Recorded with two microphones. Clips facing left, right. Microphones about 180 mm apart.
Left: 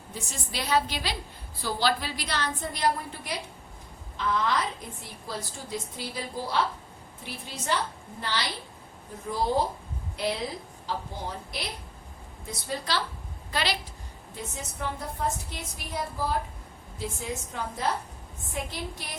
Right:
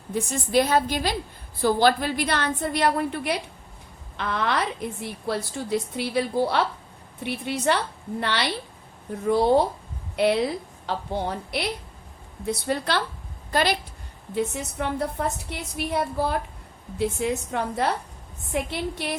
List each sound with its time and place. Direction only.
0.1 s a woman's voice: 55° right (ahead or behind)
13.5 s a woman's voice: 50° right (ahead or behind)
14.3 s a woman's voice: 70° right (ahead or behind)